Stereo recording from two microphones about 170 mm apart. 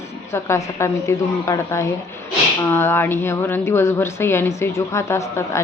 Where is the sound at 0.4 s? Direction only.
15° left (ahead or behind).